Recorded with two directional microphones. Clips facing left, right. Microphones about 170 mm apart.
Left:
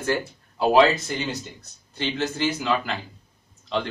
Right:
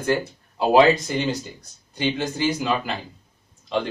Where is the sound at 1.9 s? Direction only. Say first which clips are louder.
Right 2 dB; 15° right (ahead or behind).